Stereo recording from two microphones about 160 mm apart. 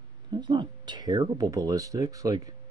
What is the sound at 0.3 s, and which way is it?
Speech, 30° right (ahead or behind).